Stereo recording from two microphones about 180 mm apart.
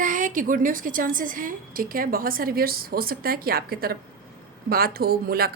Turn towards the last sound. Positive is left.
turn(degrees=-60)  # may be behind; listen again after turning